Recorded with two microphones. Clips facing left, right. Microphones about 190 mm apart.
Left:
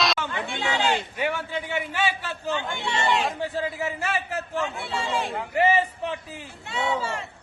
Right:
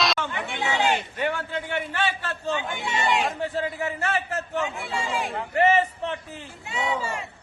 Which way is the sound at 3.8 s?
15° left (ahead or behind).